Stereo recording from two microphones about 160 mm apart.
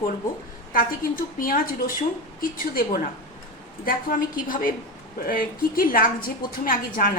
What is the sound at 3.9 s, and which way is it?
A woman's voice, 60° left (ahead or behind).